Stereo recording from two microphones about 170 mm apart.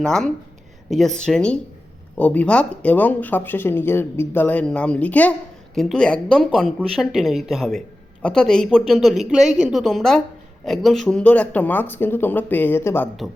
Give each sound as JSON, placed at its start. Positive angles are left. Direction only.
{"t": 0.0, "sound": "speech", "side_deg": 5}